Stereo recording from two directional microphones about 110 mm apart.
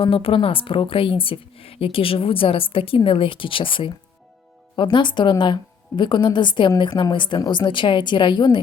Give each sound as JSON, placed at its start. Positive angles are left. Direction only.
{"t": 0.0, "sound": "a woman's voice", "side_deg": 55}